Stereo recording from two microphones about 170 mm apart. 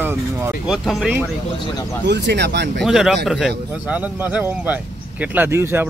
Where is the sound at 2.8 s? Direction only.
Centre (ahead or behind).